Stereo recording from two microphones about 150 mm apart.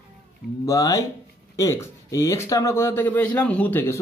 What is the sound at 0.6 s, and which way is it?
A man's voice, 20° left (ahead or behind).